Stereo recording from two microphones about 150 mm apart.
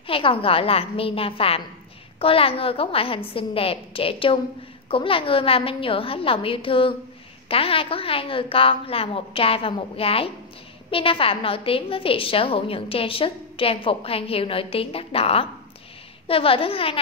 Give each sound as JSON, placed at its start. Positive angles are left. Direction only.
{"t": 0.0, "sound": "a woman's voice", "side_deg": 35}